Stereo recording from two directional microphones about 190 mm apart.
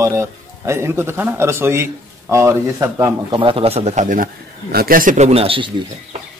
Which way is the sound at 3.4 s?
30° right (ahead or behind).